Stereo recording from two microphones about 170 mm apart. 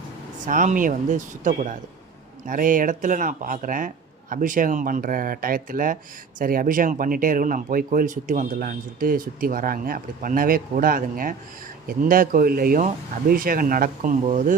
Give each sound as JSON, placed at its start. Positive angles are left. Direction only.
{"t": 0.4, "sound": "a man's voice", "side_deg": -50}